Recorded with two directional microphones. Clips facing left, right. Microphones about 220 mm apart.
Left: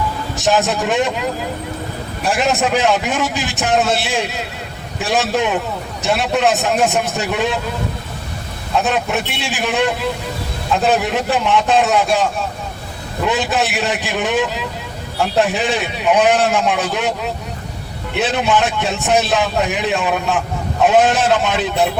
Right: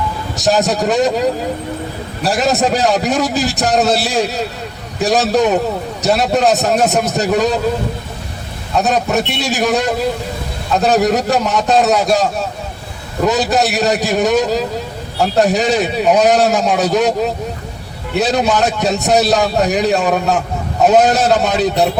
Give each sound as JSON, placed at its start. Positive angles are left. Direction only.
{"t": 0.3, "sound": "a man's voice", "side_deg": -40}
{"t": 8.8, "sound": "a man's voice", "side_deg": -40}